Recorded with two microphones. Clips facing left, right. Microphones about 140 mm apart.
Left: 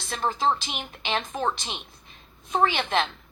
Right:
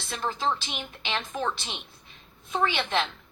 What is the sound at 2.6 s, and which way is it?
Speech, 45° left (ahead or behind).